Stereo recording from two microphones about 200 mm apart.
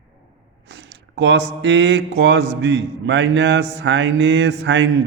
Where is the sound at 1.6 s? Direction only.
65° right (ahead or behind).